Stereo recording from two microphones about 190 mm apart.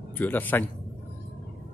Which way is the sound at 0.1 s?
10° left (ahead or behind).